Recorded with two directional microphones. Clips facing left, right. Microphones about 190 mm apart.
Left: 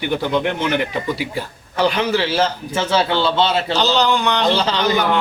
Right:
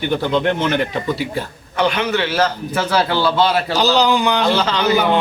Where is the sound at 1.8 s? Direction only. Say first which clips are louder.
Even; 30° left (ahead or behind).